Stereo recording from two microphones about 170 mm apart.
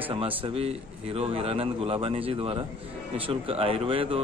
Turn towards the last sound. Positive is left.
turn(degrees=-30)  # may be behind; listen again after turning